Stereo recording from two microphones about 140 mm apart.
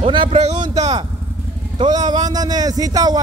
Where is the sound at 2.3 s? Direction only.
30° right (ahead or behind).